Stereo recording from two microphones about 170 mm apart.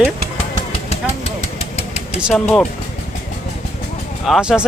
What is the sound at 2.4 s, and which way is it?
Speech, 10° left (ahead or behind).